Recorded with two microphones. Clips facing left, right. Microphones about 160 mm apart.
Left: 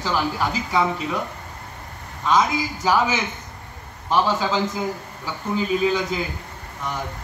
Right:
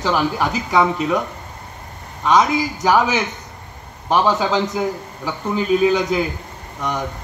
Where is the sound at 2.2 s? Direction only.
70° right (ahead or behind).